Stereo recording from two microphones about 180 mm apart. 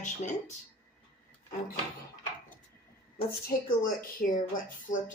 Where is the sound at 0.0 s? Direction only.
40° left (ahead or behind).